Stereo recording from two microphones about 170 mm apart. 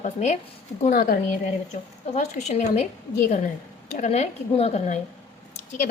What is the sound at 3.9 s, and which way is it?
A woman's voice, 45° left (ahead or behind).